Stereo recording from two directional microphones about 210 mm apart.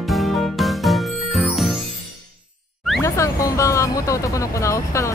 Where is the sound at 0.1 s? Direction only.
Centre (ahead or behind).